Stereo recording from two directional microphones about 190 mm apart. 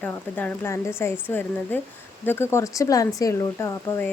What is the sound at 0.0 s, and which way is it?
Speech, 10° left (ahead or behind).